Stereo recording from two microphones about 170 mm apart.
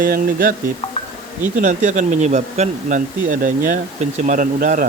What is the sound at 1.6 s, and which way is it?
Speech, 45° right (ahead or behind).